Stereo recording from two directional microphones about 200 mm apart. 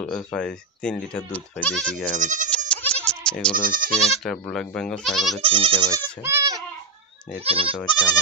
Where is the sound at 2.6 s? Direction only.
5° left (ahead or behind).